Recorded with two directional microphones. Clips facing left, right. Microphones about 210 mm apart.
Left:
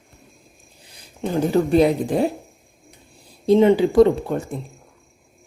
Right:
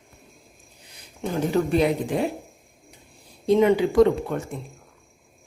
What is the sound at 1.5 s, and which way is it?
Speech, 35° left (ahead or behind).